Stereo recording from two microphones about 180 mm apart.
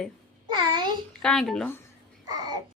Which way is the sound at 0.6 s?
25° right (ahead or behind).